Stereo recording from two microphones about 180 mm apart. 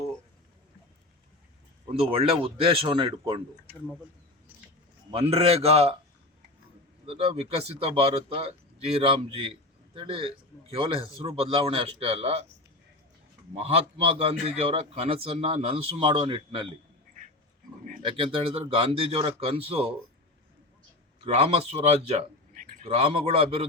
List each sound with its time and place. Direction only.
1.9 s speech: 30° right (ahead or behind)
5.1 s speech: 35° right (ahead or behind)
7.0 s speech: 30° right (ahead or behind)
13.5 s speech: 30° right (ahead or behind)
18.0 s speech: 30° right (ahead or behind)
21.2 s speech: 35° right (ahead or behind)